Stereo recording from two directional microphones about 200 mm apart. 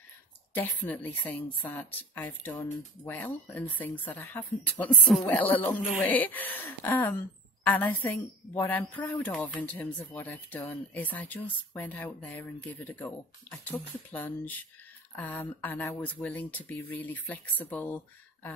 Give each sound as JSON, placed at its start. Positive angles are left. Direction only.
{"t": 0.6, "sound": "speech", "side_deg": 10}